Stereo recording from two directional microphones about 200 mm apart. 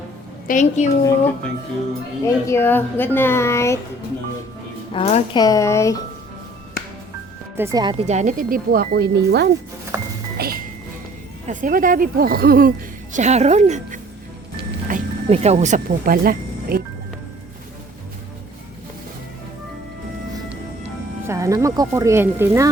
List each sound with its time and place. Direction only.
0.4 s a woman's voice: 40° left (ahead or behind)
2.2 s a woman's voice: 10° left (ahead or behind)
4.9 s a woman's voice: 30° left (ahead or behind)
5.4 s a woman's voice: 15° left (ahead or behind)
7.5 s speech: 15° right (ahead or behind)
8.0 s speech: 35° right (ahead or behind); by 9.5 s 55° right (ahead or behind)
9.9 s music: 15° right (ahead or behind)
10.3 s music: 50° right (ahead or behind)
11.4 s speech: 40° right (ahead or behind)
13.1 s speech: 35° right (ahead or behind)
21.2 s speech: 15° right (ahead or behind)